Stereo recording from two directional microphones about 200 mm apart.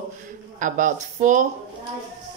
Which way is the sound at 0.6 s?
40° right (ahead or behind).